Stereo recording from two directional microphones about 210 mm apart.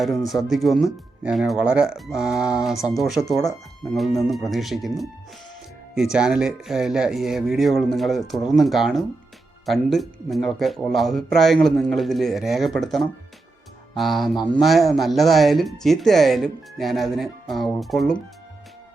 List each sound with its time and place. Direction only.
0.4 s speech: centre (ahead or behind)